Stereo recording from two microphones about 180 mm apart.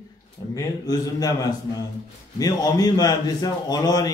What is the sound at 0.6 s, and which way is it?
A man's voice, 20° left (ahead or behind).